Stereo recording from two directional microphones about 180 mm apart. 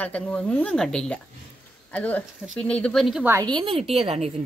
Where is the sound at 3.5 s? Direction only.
30° right (ahead or behind).